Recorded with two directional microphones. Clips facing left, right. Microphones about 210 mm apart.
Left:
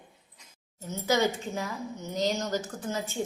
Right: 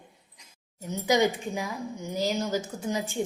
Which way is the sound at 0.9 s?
15° right (ahead or behind).